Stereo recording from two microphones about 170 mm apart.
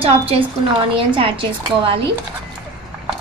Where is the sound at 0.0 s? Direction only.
35° right (ahead or behind).